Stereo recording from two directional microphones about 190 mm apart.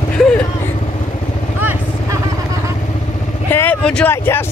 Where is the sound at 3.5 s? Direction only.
10° left (ahead or behind).